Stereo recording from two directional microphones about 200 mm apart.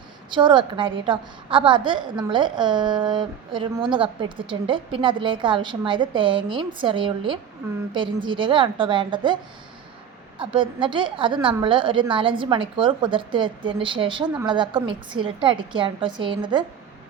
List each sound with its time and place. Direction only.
0.3 s a woman's voice: 25° right (ahead or behind)